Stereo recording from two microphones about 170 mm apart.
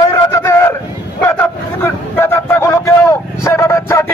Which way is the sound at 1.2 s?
10° left (ahead or behind).